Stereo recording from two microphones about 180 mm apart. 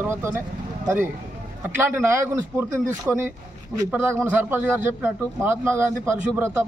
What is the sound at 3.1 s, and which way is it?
Speech, centre (ahead or behind).